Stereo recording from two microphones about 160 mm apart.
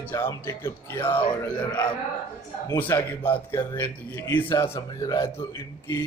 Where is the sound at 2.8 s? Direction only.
10° left (ahead or behind).